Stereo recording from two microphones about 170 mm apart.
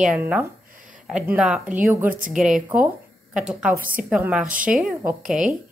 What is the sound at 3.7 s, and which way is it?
Speech, 55° right (ahead or behind).